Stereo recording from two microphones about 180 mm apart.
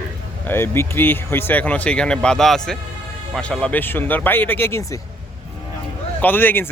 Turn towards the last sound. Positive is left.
turn(degrees=10)  # may be behind; listen again after turning